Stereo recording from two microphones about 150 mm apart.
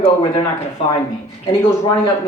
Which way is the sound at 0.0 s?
30° left (ahead or behind).